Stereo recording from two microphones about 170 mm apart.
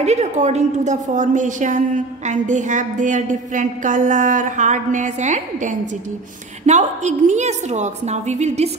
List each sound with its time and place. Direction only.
0.0 s a woman's voice: 40° right (ahead or behind)